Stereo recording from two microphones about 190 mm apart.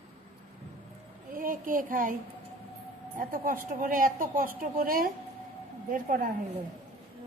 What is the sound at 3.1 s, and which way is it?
A woman's voice, 45° right (ahead or behind).